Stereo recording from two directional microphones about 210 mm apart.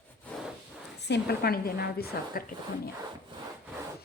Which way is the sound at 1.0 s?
50° left (ahead or behind).